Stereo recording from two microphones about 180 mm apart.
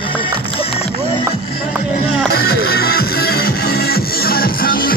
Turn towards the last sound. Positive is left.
turn(degrees=55)  # may be behind; listen again after turning